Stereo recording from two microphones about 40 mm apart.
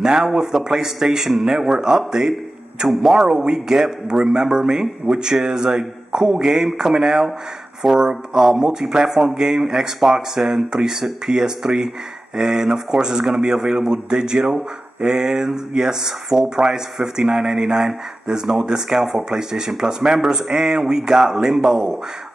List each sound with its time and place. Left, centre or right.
0.0 s speech: centre
1.9 s speech: centre
2.9 s speech: centre
3.3 s speech: centre